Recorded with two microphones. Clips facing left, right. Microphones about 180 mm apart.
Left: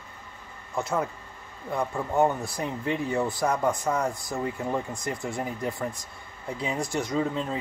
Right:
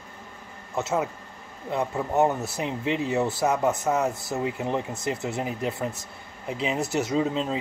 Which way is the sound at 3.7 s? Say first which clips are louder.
Right 2 dB; 20° right (ahead or behind).